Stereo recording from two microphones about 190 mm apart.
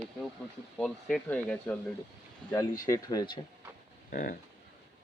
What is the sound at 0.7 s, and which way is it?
Speech, 5° left (ahead or behind).